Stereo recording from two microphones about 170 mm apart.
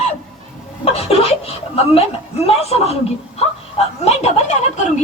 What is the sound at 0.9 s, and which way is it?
A woman's voice, 35° left (ahead or behind).